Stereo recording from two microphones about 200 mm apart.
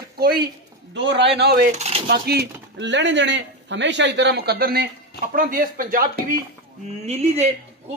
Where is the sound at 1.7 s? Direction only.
35° right (ahead or behind).